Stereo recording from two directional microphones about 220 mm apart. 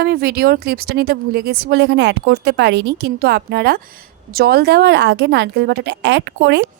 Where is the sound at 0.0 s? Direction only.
45° right (ahead or behind).